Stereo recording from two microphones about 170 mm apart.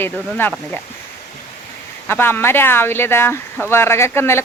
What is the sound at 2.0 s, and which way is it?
Speech, 15° left (ahead or behind).